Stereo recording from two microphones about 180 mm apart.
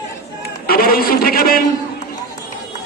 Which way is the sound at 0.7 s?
55° left (ahead or behind).